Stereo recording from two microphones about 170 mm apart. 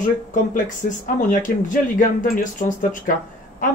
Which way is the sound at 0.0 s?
50° left (ahead or behind).